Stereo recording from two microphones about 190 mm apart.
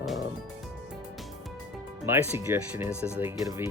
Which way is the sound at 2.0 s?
10° right (ahead or behind).